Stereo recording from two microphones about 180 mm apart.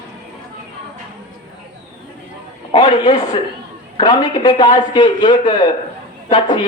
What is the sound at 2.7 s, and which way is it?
A man's voice, 25° left (ahead or behind).